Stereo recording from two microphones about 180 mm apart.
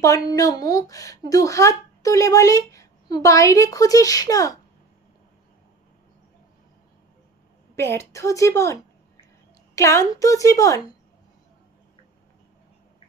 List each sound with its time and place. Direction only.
0.4 s speech: 20° left (ahead or behind)
7.7 s a woman's voice: 15° left (ahead or behind)
9.8 s a woman's voice: 15° left (ahead or behind)